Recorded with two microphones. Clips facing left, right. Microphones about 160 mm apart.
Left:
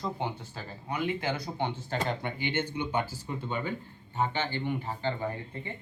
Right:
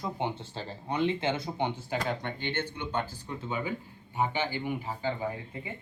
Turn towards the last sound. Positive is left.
turn(degrees=-5)  # may be behind; listen again after turning